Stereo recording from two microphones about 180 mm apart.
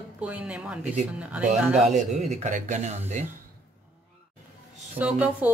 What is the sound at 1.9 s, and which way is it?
Speech, 40° right (ahead or behind).